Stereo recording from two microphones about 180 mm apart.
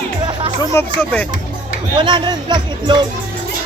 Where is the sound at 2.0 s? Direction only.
25° right (ahead or behind).